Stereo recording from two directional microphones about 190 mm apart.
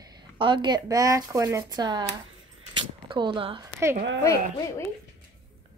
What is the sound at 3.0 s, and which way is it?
Speech, 25° right (ahead or behind).